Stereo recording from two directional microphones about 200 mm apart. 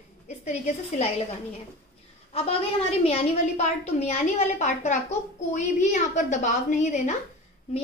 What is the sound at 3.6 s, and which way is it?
A woman's voice, 35° left (ahead or behind).